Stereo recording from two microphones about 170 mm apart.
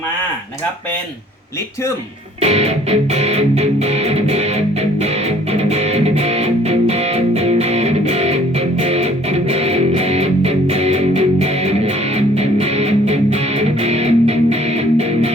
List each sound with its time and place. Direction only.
2.4 s music: 40° right (ahead or behind)